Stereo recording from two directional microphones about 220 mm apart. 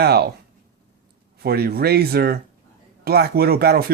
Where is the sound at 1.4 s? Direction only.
45° right (ahead or behind).